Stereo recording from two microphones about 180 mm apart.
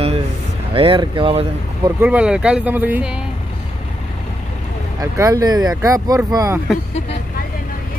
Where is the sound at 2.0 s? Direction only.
5° right (ahead or behind).